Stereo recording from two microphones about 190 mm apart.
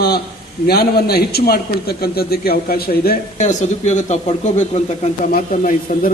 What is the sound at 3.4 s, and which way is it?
A man's voice, 40° left (ahead or behind).